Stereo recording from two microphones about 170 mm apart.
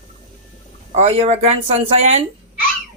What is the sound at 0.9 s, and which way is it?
Speech, 35° right (ahead or behind).